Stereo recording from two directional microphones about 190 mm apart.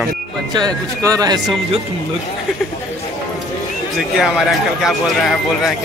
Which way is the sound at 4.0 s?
Centre (ahead or behind).